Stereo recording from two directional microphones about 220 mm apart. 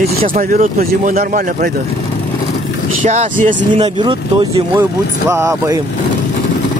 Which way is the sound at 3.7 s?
20° right (ahead or behind).